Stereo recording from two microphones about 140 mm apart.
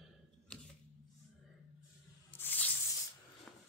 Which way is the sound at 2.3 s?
15° left (ahead or behind).